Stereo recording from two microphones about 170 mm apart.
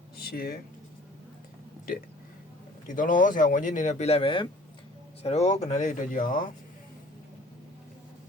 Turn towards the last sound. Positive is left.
turn(degrees=55)  # may be behind; listen again after turning